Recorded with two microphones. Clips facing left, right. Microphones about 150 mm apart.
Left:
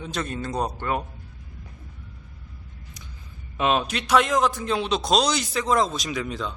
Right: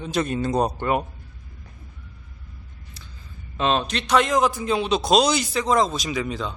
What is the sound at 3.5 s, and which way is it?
A man's voice, 10° left (ahead or behind).